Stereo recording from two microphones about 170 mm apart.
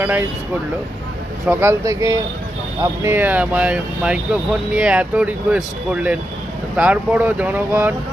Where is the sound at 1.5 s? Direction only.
15° right (ahead or behind).